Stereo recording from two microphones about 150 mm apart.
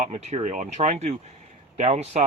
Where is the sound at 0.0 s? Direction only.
45° right (ahead or behind).